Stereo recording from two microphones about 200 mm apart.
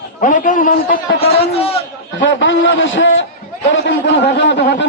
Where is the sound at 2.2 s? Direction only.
65° left (ahead or behind).